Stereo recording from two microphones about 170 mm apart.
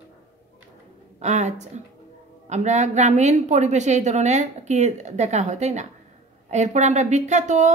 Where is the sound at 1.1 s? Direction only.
40° right (ahead or behind).